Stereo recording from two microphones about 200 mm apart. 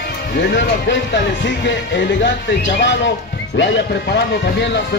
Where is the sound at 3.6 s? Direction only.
55° left (ahead or behind).